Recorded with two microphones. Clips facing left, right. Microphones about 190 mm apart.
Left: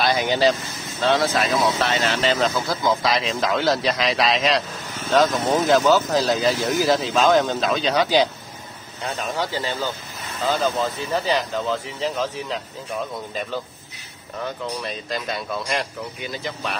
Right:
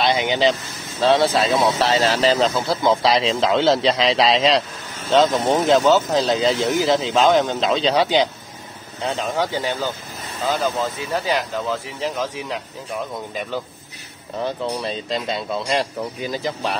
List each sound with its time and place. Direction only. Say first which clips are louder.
0.0 s speech: right 1 dB; 20° right (ahead or behind)
9.5 s speech: right 2 dB; 15° right (ahead or behind)
14.4 s speech: right 4 dB; 30° right (ahead or behind)